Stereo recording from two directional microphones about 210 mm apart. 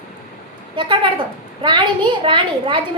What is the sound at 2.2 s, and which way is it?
Speech, 25° right (ahead or behind).